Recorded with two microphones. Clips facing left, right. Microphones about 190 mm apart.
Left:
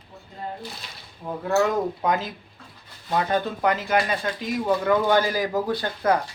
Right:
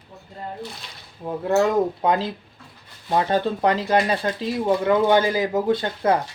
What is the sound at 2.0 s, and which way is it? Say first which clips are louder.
Speech: right 3 dB; 30° right (ahead or behind).